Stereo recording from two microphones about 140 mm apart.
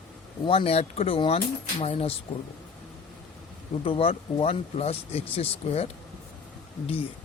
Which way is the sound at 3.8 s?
40° left (ahead or behind).